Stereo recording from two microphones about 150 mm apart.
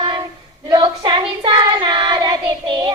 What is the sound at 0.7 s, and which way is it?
Child singing, 30° right (ahead or behind).